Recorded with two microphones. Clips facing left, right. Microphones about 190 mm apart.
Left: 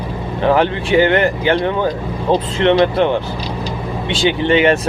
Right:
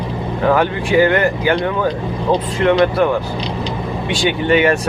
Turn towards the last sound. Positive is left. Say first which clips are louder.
# left 1 dB
turn(degrees=25)  # may be behind; listen again after turning